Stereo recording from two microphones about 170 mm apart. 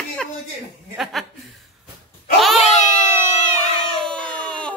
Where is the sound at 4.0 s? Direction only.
5° left (ahead or behind).